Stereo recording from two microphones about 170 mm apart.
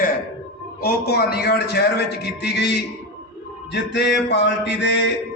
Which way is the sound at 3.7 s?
90° left.